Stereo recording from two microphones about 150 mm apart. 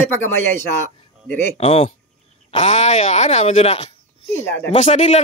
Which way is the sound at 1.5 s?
40° left (ahead or behind).